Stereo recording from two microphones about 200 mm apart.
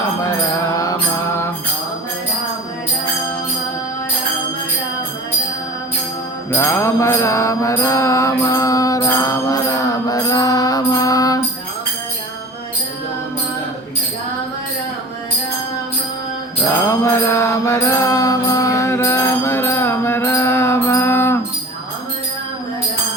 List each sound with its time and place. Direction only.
6.5 s mantra: 10° left (ahead or behind)
16.9 s mantra: 10° left (ahead or behind)